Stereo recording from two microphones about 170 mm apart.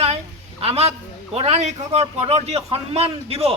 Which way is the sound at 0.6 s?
35° right (ahead or behind).